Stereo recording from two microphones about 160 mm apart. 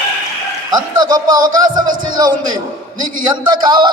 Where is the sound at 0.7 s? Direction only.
25° right (ahead or behind).